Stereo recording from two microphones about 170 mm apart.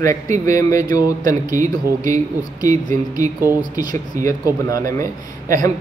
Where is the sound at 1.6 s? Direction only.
50° right (ahead or behind).